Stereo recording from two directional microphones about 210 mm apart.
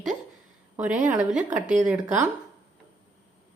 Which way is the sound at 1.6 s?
35° right (ahead or behind).